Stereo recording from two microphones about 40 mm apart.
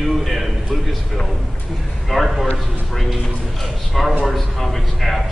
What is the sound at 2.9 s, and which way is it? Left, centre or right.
Music, centre.